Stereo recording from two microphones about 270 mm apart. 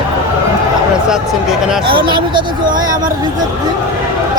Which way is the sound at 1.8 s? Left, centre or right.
Centre.